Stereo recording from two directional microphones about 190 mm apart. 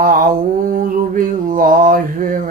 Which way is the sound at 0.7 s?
45° right (ahead or behind).